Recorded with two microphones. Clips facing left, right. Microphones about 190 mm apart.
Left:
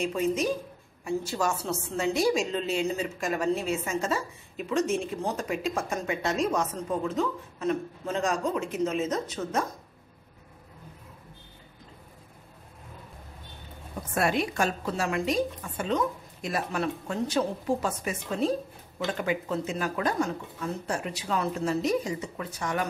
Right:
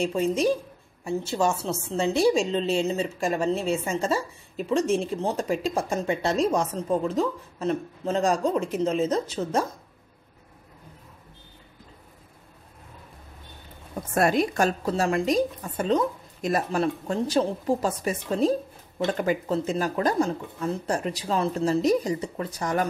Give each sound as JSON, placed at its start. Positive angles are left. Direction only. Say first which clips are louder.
{"t": 0.0, "sound": "a woman's voice", "louder": "right 4 dB", "side_deg": -30}
{"t": 14.1, "sound": "a woman's voice", "louder": "right 4 dB", "side_deg": -40}